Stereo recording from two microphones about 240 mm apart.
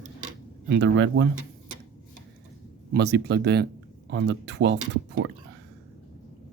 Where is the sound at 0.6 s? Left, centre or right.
Right.